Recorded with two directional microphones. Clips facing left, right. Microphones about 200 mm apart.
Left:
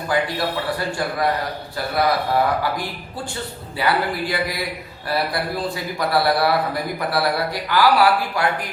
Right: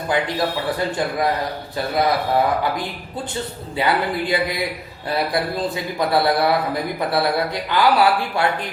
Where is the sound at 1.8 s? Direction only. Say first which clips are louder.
Right 3 dB; 20° right (ahead or behind).